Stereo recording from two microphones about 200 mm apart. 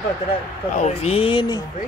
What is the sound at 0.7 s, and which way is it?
Speech, 30° left (ahead or behind).